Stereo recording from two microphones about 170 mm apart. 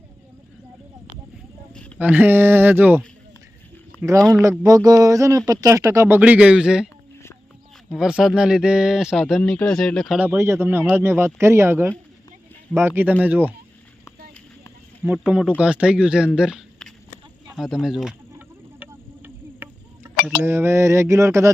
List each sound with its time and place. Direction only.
2.0 s speech: 10° right (ahead or behind)
4.3 s speech: 20° right (ahead or behind)
7.9 s speech: 5° right (ahead or behind)
10.2 s speech: 15° right (ahead or behind)
15.0 s speech: 5° right (ahead or behind)
18.3 s a sound: 10° right (ahead or behind)
20.2 s speech: 15° right (ahead or behind)